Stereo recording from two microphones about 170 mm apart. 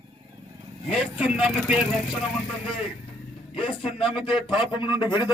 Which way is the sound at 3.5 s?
30° left (ahead or behind).